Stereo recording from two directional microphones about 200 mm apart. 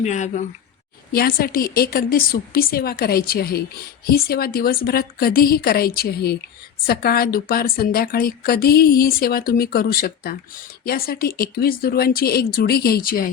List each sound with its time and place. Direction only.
0.0 s speech: 35° left (ahead or behind)
1.1 s a woman's voice: 50° left (ahead or behind)